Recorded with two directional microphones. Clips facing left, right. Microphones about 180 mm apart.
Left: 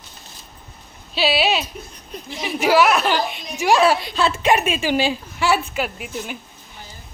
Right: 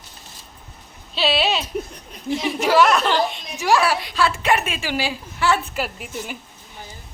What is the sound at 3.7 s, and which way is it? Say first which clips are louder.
A woman's voice: left 3 dB; 20° left (ahead or behind).